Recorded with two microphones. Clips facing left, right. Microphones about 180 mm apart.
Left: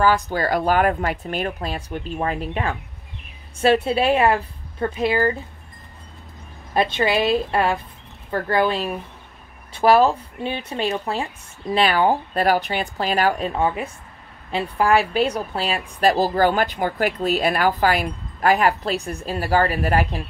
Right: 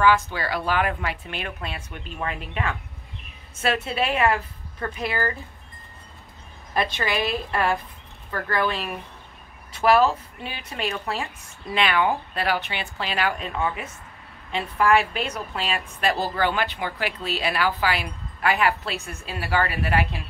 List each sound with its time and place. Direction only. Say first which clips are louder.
0.0 s a woman's voice: left 2 dB; 40° left (ahead or behind); by 5.3 s 25° left (ahead or behind)
6.7 s a woman's voice: left 6 dB; 25° left (ahead or behind)